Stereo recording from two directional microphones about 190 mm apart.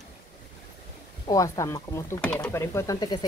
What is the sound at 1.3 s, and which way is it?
Speech, 15° left (ahead or behind).